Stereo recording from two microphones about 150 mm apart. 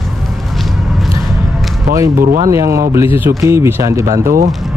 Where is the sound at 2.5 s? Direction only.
20° right (ahead or behind).